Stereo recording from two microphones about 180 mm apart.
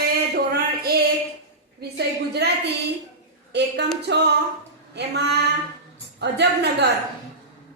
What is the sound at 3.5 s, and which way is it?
A woman's voice, 70° right (ahead or behind).